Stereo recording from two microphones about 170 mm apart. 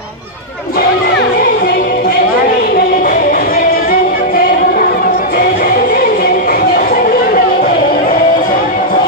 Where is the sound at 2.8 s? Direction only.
60° left (ahead or behind).